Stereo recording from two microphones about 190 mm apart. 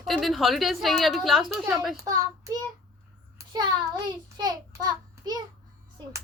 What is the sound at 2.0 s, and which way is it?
Child singing, 15° right (ahead or behind).